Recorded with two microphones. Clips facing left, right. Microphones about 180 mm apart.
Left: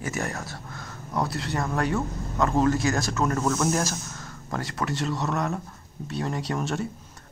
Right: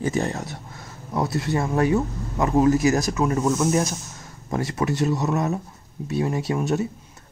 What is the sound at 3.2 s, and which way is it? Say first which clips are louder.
Speech: right 1 dB; 10° right (ahead or behind).